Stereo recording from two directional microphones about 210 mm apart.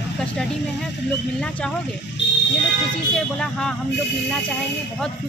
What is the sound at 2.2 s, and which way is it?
Speech, 55° left (ahead or behind).